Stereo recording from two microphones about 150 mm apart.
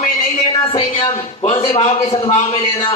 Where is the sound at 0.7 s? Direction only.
35° left (ahead or behind).